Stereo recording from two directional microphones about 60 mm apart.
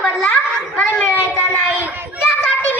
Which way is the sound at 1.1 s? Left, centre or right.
Left.